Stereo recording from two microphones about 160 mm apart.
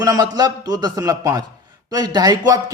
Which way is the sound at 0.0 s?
20° right (ahead or behind).